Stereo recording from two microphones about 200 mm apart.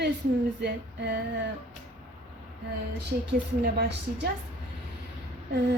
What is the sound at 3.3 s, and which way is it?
A woman's voice, 55° right (ahead or behind).